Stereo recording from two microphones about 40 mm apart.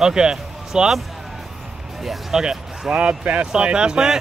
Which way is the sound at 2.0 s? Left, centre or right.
Centre.